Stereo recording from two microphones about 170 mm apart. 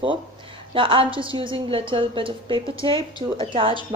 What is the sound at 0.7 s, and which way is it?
A woman's voice, 30° right (ahead or behind).